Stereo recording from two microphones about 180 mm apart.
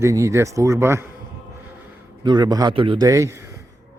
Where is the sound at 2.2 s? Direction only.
25° right (ahead or behind).